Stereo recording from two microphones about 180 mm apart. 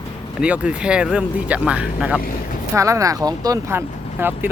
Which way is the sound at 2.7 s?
15° right (ahead or behind).